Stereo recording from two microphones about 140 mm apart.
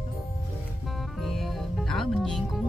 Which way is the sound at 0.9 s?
Centre (ahead or behind).